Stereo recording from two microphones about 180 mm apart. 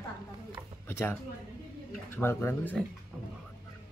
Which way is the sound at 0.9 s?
15° left (ahead or behind).